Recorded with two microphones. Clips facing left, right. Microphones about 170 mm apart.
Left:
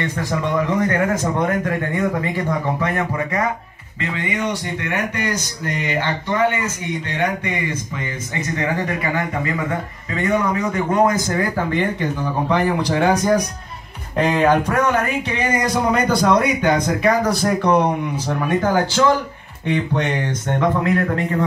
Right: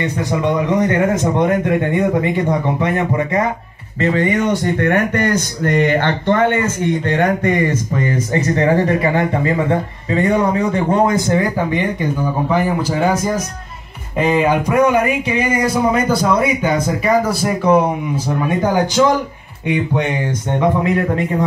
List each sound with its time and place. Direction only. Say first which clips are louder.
0.3 s speech: right 4 dB; 20° right (ahead or behind)
4.0 s speech: right 8 dB; 45° right (ahead or behind); by 12.1 s 15° right (ahead or behind)
12.4 s speech: even; 5° right (ahead or behind)